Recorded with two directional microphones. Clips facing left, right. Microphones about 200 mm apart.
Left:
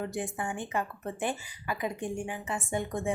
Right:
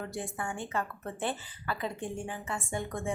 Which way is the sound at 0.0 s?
20° left (ahead or behind).